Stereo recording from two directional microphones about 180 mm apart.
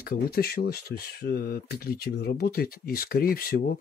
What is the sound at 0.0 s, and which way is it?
Speech, 55° left (ahead or behind).